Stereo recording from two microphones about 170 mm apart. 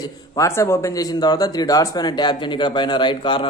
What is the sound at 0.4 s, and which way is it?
A man's voice, 15° left (ahead or behind).